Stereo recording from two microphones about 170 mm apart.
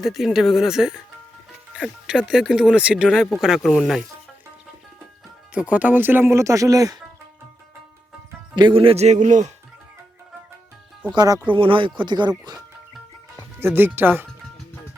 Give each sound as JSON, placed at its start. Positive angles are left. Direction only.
{"t": 0.0, "sound": "speech", "side_deg": 0}
{"t": 5.5, "sound": "speech", "side_deg": -10}
{"t": 8.5, "sound": "speech", "side_deg": -30}
{"t": 11.1, "sound": "speech", "side_deg": -25}
{"t": 13.6, "sound": "speech", "side_deg": -15}